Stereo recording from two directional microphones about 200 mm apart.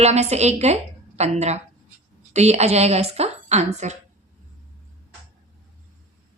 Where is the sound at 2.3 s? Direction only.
35° right (ahead or behind).